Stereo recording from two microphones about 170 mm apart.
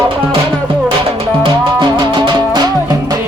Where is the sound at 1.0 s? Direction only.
30° right (ahead or behind).